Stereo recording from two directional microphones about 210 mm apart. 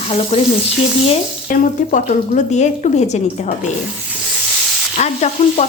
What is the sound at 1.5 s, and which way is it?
A woman's voice, 35° left (ahead or behind).